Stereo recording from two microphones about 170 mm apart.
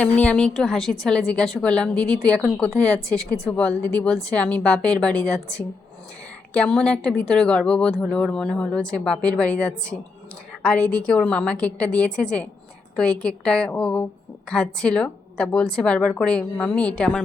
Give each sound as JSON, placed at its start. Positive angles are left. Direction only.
{"t": 0.0, "sound": "speech", "side_deg": 5}